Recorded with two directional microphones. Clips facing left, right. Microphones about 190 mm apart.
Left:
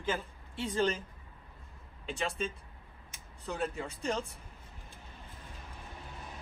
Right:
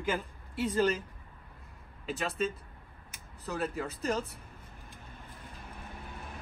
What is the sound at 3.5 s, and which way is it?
Speech, 5° right (ahead or behind).